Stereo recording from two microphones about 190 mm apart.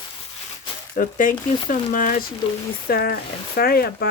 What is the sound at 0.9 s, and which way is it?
Speech, 45° left (ahead or behind).